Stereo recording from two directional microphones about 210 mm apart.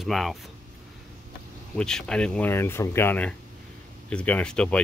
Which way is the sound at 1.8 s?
5° left (ahead or behind).